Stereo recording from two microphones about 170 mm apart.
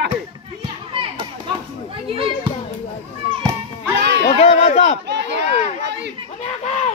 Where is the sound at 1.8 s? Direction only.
30° right (ahead or behind).